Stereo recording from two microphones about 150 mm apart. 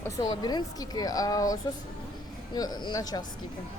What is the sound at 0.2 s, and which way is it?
Speech, 25° left (ahead or behind).